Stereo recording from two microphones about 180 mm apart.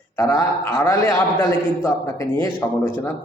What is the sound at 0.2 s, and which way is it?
A man's voice, 20° left (ahead or behind).